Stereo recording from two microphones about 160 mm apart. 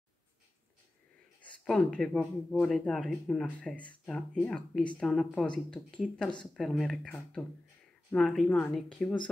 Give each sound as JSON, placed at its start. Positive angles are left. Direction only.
{"t": 1.4, "sound": "speech", "side_deg": 5}